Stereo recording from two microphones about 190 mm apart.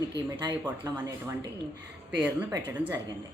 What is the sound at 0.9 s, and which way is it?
Speech, 15° right (ahead or behind).